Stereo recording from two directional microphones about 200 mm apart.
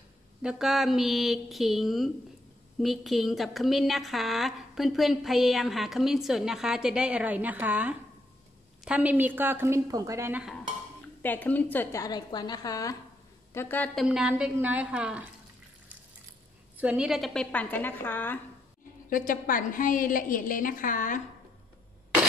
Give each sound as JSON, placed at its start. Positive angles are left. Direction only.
{"t": 0.4, "sound": "a woman's voice", "side_deg": -5}
{"t": 11.2, "sound": "a woman's voice", "side_deg": 10}
{"t": 14.0, "sound": "a woman's voice", "side_deg": -5}
{"t": 16.7, "sound": "a woman's voice", "side_deg": -5}
{"t": 19.0, "sound": "a woman's voice", "side_deg": 40}